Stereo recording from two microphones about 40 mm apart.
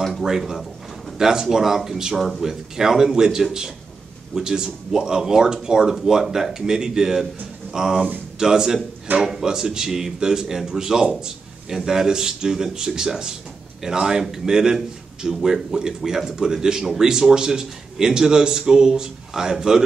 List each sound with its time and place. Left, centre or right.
0.2 s speech: centre